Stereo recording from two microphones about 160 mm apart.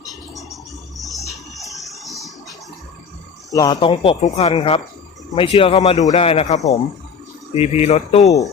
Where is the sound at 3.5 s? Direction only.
25° left (ahead or behind); by 8.3 s 45° left (ahead or behind).